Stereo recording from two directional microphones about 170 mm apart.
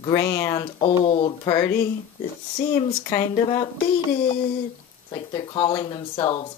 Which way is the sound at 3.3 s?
30° left (ahead or behind).